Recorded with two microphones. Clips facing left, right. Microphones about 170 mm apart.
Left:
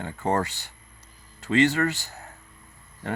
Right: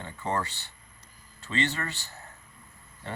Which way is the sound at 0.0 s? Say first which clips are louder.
Left 6 dB; 45° left (ahead or behind).